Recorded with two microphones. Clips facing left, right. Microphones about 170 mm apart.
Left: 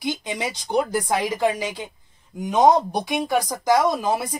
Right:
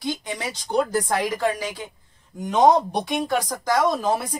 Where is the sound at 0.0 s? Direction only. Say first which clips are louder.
Left 2 dB; 15° left (ahead or behind).